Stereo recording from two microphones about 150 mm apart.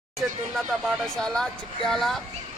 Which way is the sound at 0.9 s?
5° left (ahead or behind).